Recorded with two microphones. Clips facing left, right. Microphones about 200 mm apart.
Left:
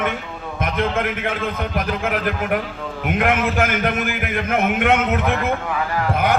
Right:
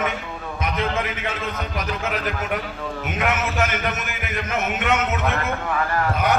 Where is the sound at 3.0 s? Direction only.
55° left (ahead or behind).